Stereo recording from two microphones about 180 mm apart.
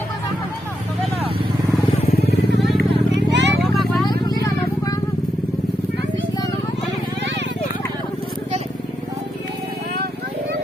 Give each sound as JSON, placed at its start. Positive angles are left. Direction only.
{"t": 2.7, "sound": "vehicle", "side_deg": -75}
{"t": 3.6, "sound": "vehicle", "side_deg": 0}
{"t": 4.0, "sound": "vehicle", "side_deg": 20}